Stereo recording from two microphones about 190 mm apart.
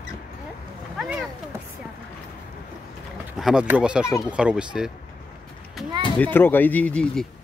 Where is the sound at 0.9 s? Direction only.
Centre (ahead or behind).